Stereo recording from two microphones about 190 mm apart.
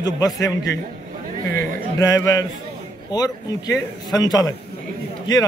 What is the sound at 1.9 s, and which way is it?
A man's voice, 20° left (ahead or behind).